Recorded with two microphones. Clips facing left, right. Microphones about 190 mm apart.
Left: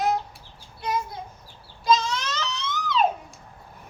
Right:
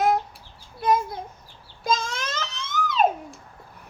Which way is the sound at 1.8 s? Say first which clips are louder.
Left 3 dB; 50° right (ahead or behind).